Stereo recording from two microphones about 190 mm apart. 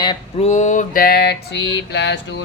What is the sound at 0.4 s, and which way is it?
A man's voice, 40° left (ahead or behind).